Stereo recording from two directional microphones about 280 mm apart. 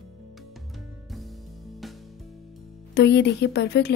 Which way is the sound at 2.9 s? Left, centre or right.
Left.